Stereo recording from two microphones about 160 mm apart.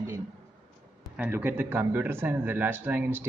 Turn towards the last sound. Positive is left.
turn(degrees=-10)  # may be behind; listen again after turning